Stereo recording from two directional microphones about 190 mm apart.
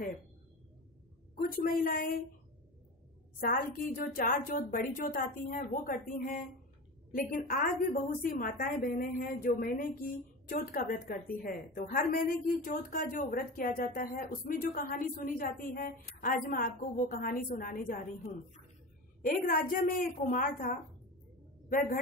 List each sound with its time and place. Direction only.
1.3 s speech: 50° left (ahead or behind)
3.3 s speech: 50° left (ahead or behind)
19.2 s speech: 50° left (ahead or behind)